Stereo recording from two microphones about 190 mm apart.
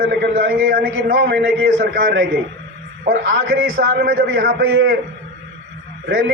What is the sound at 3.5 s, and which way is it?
Speech, 80° right.